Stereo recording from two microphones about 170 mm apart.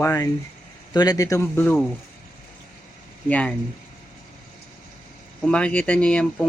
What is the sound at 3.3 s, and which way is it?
Speech, 5° left (ahead or behind).